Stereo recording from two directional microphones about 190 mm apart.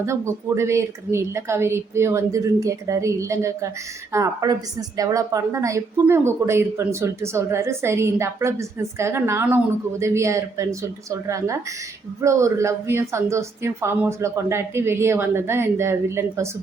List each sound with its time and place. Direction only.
0.0 s a woman's voice: 15° right (ahead or behind)